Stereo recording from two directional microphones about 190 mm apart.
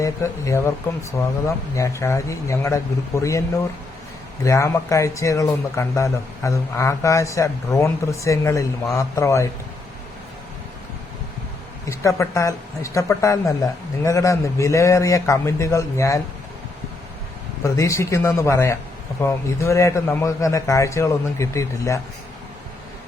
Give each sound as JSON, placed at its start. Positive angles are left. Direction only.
{"t": 0.0, "sound": "speech", "side_deg": 15}
{"t": 4.4, "sound": "speech", "side_deg": 15}
{"t": 11.9, "sound": "speech", "side_deg": 15}
{"t": 17.6, "sound": "speech", "side_deg": 15}